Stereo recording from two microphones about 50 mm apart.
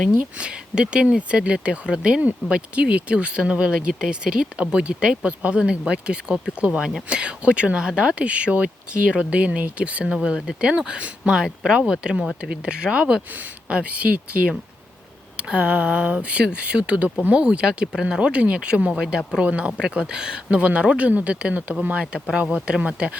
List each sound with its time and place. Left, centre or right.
0.2 s speech: right
10.0 s speech: centre
15.4 s speech: right
19.5 s speech: right
22.1 s speech: centre